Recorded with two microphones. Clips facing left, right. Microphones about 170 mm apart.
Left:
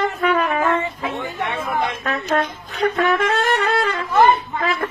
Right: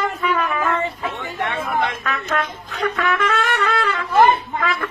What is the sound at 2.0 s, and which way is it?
Music, 35° left (ahead or behind).